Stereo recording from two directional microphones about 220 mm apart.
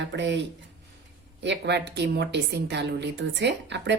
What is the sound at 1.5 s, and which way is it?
A woman's voice, 50° right (ahead or behind).